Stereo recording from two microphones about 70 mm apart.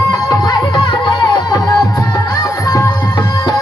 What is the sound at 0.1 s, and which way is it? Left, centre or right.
Music, left.